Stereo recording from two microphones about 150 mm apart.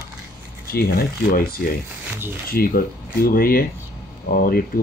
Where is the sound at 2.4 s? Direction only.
85° left.